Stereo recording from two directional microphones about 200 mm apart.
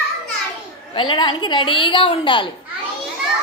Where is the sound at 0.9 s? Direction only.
25° left (ahead or behind).